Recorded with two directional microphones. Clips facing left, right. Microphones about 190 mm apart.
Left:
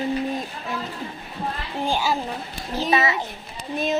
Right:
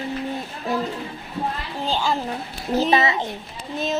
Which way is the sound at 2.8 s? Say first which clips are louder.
Right 2 dB; 30° right (ahead or behind).